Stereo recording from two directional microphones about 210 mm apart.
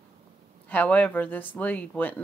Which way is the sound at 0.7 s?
5° left (ahead or behind).